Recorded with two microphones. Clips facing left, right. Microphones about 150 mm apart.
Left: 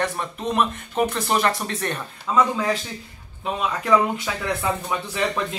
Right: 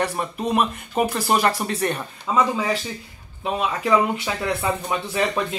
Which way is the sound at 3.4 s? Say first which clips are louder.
Right 2 dB; 5° right (ahead or behind).